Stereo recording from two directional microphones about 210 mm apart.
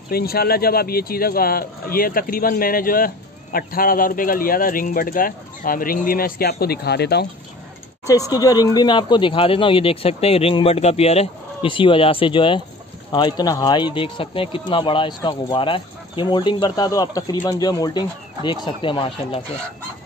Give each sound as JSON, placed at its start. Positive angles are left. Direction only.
{"t": 0.1, "sound": "speech", "side_deg": 45}
{"t": 8.1, "sound": "speech", "side_deg": 15}